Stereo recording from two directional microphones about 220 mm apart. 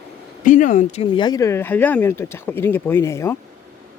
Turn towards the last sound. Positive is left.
turn(degrees=15)  # may be behind; listen again after turning